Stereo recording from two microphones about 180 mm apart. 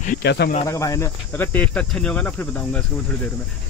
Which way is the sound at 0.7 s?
15° left (ahead or behind).